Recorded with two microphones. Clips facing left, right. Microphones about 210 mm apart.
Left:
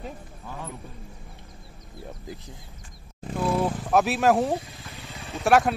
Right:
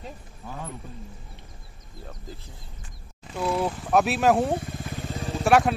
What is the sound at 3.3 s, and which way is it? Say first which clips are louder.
Speech: left 1 dB; centre (ahead or behind).